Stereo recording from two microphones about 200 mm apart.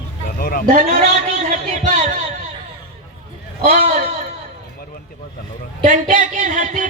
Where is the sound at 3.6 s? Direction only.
35° right (ahead or behind).